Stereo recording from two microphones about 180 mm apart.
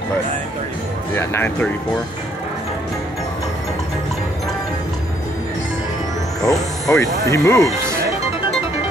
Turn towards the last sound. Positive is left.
turn(degrees=15)  # may be behind; listen again after turning